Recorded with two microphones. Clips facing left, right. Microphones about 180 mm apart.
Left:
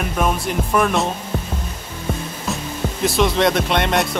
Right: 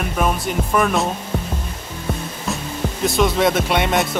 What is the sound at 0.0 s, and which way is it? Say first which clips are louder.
Music: even; centre (ahead or behind).